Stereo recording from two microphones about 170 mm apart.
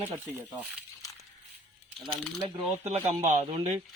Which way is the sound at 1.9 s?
5° left (ahead or behind).